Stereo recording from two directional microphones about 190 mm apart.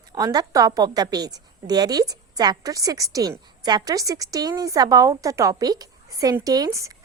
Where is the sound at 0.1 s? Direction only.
20° right (ahead or behind).